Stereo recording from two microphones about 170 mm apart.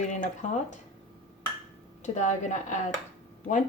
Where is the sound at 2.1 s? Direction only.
45° left (ahead or behind).